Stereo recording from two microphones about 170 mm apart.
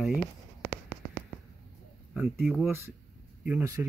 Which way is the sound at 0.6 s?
15° right (ahead or behind).